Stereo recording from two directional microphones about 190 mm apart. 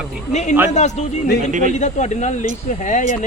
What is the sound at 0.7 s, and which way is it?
Speech, 40° left (ahead or behind).